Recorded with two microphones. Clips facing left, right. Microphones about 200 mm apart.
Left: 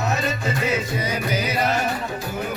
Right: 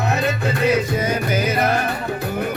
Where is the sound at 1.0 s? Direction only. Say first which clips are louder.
Right 4 dB; 50° right (ahead or behind).